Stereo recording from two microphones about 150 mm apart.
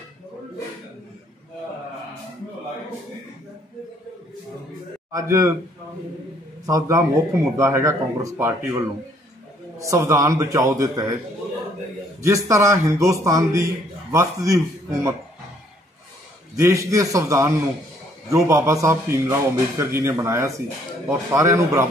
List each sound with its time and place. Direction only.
5.1 s speech: 20° right (ahead or behind)
6.6 s speech: 20° right (ahead or behind)
12.2 s speech: 20° right (ahead or behind)
16.5 s speech: 20° right (ahead or behind)